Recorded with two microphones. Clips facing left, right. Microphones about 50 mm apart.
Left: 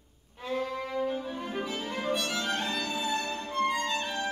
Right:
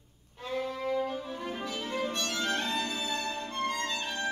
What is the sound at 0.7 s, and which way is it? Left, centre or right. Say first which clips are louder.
Music: even; centre.